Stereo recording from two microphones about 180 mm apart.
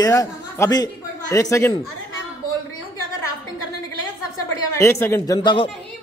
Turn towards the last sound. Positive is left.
turn(degrees=25)  # may be behind; listen again after turning